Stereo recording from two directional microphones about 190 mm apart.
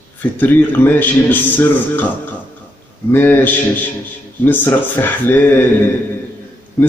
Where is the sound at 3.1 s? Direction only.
10° left (ahead or behind).